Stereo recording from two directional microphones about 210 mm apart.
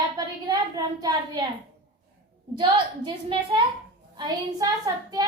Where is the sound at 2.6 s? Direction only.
25° right (ahead or behind).